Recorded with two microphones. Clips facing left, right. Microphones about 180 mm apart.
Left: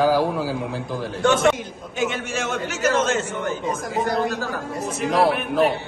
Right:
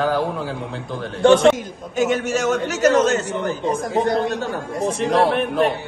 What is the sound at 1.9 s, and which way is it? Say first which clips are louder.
A man's voice: right 6 dB; 40° right (ahead or behind).